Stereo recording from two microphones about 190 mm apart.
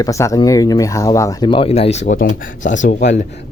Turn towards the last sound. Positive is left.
turn(degrees=45)  # may be behind; listen again after turning